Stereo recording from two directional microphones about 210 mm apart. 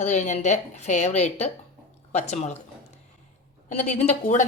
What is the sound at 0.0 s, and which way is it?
Speech, 35° left (ahead or behind).